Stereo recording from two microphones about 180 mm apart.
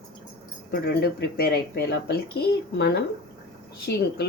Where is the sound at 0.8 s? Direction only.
65° left (ahead or behind).